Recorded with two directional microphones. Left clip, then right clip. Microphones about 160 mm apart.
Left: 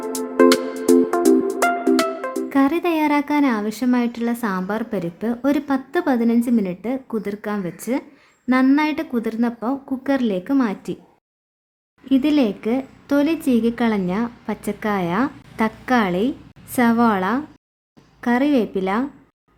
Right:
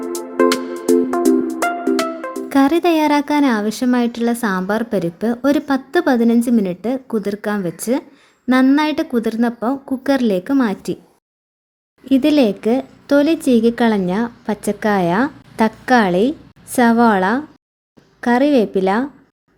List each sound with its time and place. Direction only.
0.0 s music: centre (ahead or behind)
2.5 s speech: 20° right (ahead or behind)
12.0 s speech: 20° right (ahead or behind)